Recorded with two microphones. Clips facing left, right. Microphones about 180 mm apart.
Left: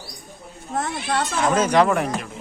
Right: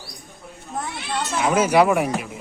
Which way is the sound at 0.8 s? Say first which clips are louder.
Left 4 dB; 85° left.